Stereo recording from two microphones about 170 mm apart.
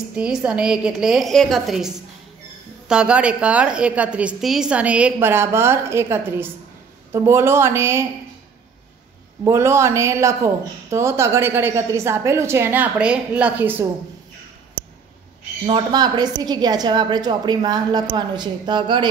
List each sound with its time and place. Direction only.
0.1 s a woman's voice: 5° right (ahead or behind)
9.4 s speech: 15° right (ahead or behind)
15.6 s a woman's voice: 25° right (ahead or behind)